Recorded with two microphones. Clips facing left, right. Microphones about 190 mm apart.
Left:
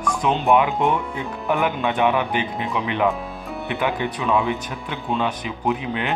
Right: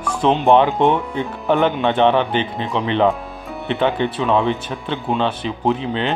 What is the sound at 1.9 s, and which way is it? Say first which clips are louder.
Speech: right 4 dB; 30° right (ahead or behind).